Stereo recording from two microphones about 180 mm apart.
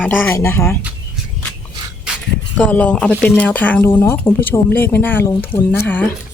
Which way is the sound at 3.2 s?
5° left (ahead or behind).